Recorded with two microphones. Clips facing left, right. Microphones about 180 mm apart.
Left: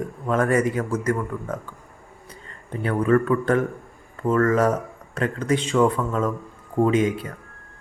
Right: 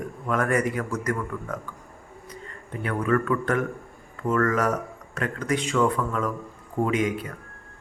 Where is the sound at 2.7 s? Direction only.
30° left (ahead or behind).